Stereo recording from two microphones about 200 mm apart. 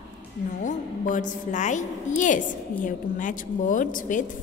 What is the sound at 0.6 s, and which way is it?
A woman's voice, 40° left (ahead or behind).